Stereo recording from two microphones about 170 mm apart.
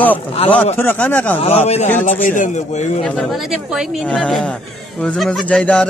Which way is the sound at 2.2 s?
50° left (ahead or behind).